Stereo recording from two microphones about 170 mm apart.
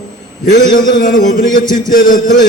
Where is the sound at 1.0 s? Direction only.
50° left (ahead or behind).